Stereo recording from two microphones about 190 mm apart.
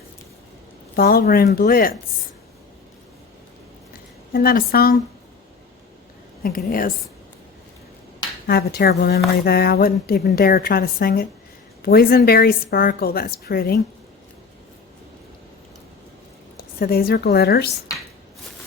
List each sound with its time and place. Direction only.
0.9 s a woman's voice: 50° left (ahead or behind)
4.3 s a woman's voice: 50° left (ahead or behind)
6.4 s a woman's voice: 50° left (ahead or behind)
8.4 s a woman's voice: 55° left (ahead or behind)
16.6 s a woman's voice: 50° left (ahead or behind)